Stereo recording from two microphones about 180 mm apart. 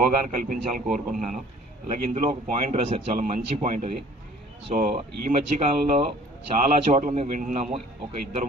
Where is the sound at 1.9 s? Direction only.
45° right (ahead or behind).